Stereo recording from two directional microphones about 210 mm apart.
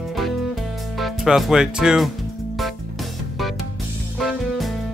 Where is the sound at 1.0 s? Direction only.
Centre (ahead or behind).